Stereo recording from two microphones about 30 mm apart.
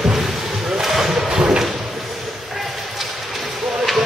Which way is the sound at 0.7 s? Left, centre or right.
Centre.